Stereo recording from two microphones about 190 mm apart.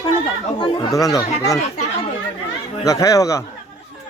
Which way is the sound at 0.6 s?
25° left (ahead or behind).